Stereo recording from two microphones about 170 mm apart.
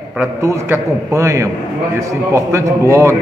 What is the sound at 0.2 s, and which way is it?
A man's voice, 15° right (ahead or behind).